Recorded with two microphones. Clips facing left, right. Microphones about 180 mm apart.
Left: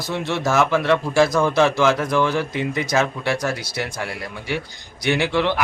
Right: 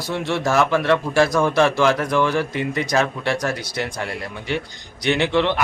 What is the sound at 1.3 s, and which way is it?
Speech, 15° right (ahead or behind).